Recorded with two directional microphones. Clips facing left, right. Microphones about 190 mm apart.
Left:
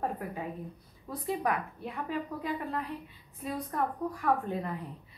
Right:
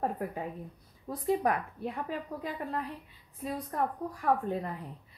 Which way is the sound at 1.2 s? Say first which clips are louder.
Right 3 dB; 40° right (ahead or behind).